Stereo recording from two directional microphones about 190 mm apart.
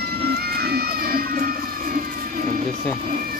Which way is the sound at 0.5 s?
55° right (ahead or behind).